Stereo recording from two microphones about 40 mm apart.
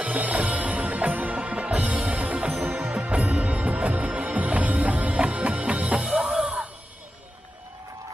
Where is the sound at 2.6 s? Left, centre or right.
Right.